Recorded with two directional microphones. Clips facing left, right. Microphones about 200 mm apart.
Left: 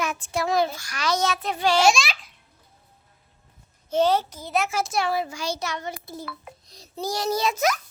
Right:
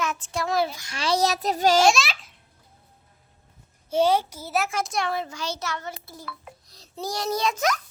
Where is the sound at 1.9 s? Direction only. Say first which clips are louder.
Right 1 dB; centre (ahead or behind).